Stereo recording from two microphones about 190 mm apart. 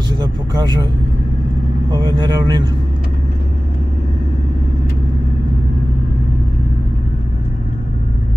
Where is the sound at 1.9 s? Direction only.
25° right (ahead or behind).